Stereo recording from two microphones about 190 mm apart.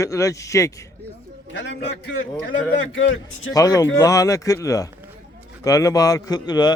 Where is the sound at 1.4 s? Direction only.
75° left (ahead or behind).